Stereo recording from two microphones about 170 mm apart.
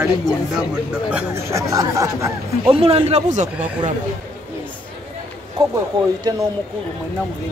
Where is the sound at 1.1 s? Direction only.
15° right (ahead or behind).